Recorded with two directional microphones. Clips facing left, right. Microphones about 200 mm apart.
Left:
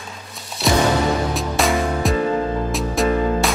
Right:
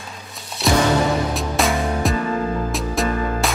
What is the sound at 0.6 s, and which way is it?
Music, centre (ahead or behind).